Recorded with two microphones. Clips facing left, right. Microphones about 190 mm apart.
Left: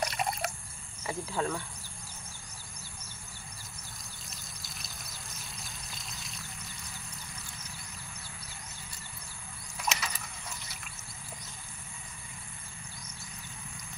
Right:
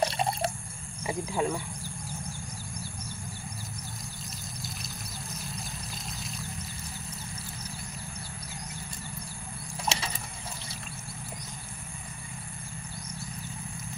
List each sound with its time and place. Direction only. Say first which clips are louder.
0.0 s water: right 5 dB; 30° right (ahead or behind)
1.0 s speech: right 4 dB; 15° right (ahead or behind)
5.6 s pour: right 6 dB; centre (ahead or behind)
9.8 s vehicle: right 2 dB; 30° right (ahead or behind)